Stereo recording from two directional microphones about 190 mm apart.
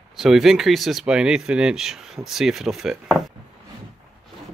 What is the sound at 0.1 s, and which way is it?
Speech, centre (ahead or behind).